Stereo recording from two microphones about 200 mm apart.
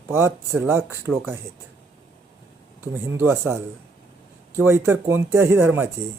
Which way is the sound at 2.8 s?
15° right (ahead or behind).